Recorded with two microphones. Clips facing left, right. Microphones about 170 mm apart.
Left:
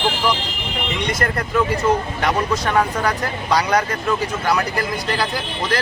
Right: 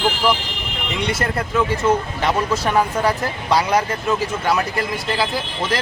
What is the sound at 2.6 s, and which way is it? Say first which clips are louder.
Speech: right 2 dB; 5° right (ahead or behind).